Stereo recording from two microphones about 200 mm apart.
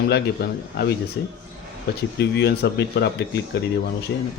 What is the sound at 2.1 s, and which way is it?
Speech, 55° left (ahead or behind).